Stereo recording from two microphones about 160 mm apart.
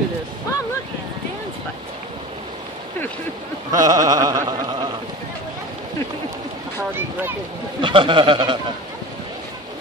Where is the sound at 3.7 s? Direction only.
25° right (ahead or behind).